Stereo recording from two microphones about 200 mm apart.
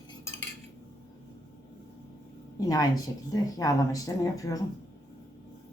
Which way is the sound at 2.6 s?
20° left (ahead or behind).